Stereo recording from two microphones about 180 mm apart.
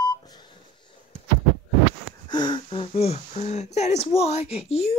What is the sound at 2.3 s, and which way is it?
Speech, 25° left (ahead or behind).